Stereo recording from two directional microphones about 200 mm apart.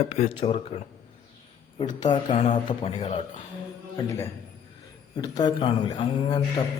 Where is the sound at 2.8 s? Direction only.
25° left (ahead or behind).